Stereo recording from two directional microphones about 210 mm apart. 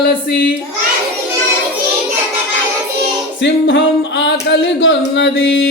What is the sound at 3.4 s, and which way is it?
Singing, 60° left (ahead or behind).